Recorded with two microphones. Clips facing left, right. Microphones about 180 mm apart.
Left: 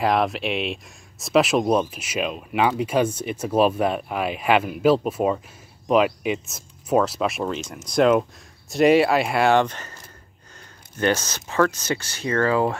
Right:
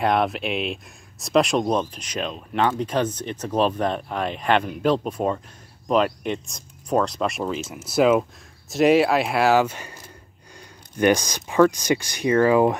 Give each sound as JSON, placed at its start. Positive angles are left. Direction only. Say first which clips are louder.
{"t": 0.0, "sound": "speech", "louder": "even", "side_deg": 0}
{"t": 11.0, "sound": "speech", "louder": "right 3 dB", "side_deg": -15}